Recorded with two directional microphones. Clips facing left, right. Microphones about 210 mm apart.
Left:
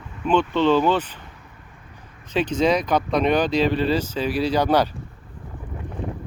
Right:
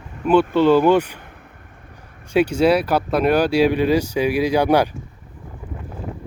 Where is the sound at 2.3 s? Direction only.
10° right (ahead or behind).